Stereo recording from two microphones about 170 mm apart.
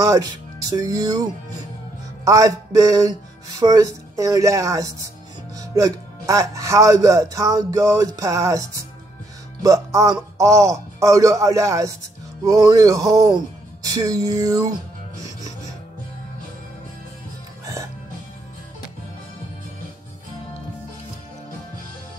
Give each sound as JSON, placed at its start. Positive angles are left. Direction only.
{"t": 0.0, "sound": "a man's voice", "side_deg": -20}